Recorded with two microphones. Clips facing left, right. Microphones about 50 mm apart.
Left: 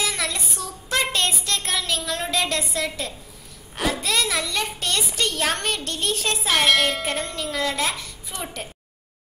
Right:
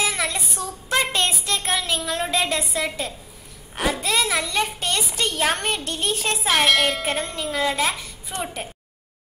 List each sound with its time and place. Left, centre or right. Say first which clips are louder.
0.0 s child singing: right 2 dB; centre
3.7 s a woman's voice: right 1 dB; centre
8.3 s a woman's voice: right 4 dB; right